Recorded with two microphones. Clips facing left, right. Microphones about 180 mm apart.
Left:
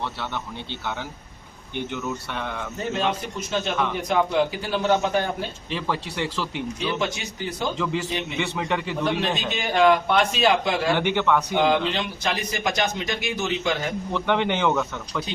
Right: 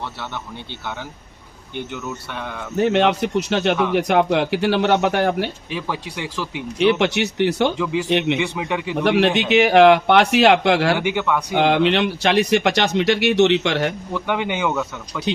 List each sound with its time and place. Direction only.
1.9 s speech: 10° right (ahead or behind)
2.7 s speech: 75° right (ahead or behind)
5.7 s speech: 10° right (ahead or behind)
6.7 s speech: 75° right (ahead or behind)
7.8 s speech: 10° right (ahead or behind)
9.0 s speech: 75° right (ahead or behind)
10.9 s speech: 10° right (ahead or behind)
11.5 s speech: 70° right (ahead or behind)
14.1 s speech: 10° right (ahead or behind)